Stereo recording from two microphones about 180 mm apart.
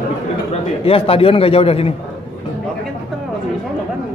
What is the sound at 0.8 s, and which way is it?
A man's voice, 30° left (ahead or behind).